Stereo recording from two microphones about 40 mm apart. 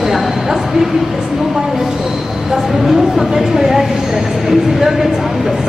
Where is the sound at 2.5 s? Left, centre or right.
Centre.